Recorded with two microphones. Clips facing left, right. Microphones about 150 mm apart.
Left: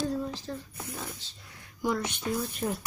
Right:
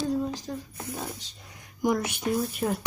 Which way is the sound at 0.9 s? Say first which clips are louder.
Right 4 dB; 20° right (ahead or behind).